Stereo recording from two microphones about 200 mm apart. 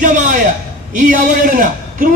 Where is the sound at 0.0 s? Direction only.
40° right (ahead or behind).